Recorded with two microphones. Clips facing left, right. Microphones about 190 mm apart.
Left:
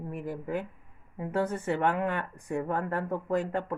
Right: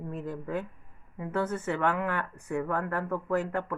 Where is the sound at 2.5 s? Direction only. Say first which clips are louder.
Even; 30° left (ahead or behind).